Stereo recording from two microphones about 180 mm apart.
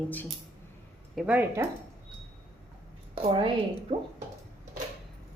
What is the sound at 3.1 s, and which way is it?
Speech, 30° right (ahead or behind).